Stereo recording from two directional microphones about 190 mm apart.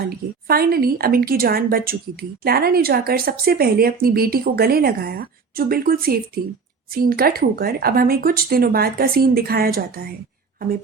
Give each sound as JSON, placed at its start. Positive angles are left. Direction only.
{"t": 0.4, "sound": "speech", "side_deg": -50}